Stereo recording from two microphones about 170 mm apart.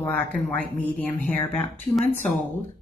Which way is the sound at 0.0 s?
10° left (ahead or behind).